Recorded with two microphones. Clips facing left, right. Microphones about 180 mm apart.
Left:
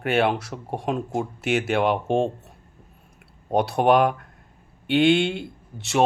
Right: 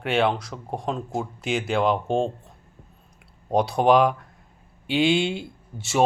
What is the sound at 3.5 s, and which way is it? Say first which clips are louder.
Speech: even; 5° left (ahead or behind).